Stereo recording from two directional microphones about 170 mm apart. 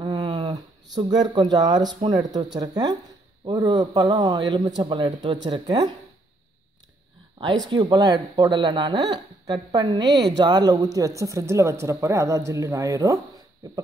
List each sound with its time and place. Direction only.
0.0 s a man's voice: 25° right (ahead or behind)
7.6 s a man's voice: 25° right (ahead or behind)